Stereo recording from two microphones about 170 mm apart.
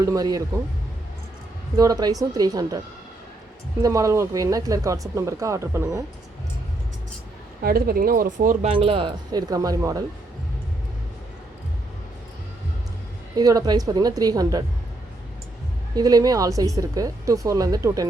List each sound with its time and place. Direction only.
0.0 s a woman's voice: 20° right (ahead or behind)
1.7 s a woman's voice: 20° right (ahead or behind)
3.8 s a woman's voice: 20° right (ahead or behind)
7.6 s speech: 60° right (ahead or behind)
8.7 s a woman's voice: 30° right (ahead or behind)
13.3 s a woman's voice: 20° right (ahead or behind)
16.0 s a woman's voice: 20° right (ahead or behind)